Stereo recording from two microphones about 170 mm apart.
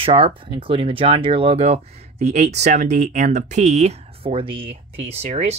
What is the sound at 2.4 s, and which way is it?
Speech, 75° right (ahead or behind).